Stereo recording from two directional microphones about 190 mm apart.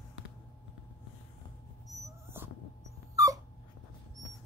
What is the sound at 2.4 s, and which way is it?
Dog, 10° right (ahead or behind).